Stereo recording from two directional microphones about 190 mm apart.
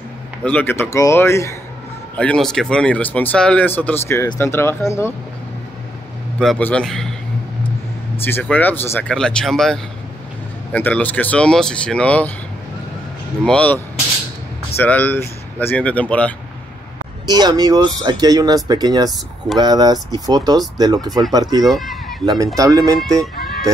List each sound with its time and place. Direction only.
0.4 s speech: 10° left (ahead or behind)
6.4 s speech: 5° left (ahead or behind)
8.2 s speech: 10° left (ahead or behind)
13.4 s speech: 5° left (ahead or behind)
14.8 s speech: 10° left (ahead or behind)
17.3 s speech: 20° right (ahead or behind)
21.6 s speech: centre (ahead or behind)
22.2 s speech: 20° right (ahead or behind)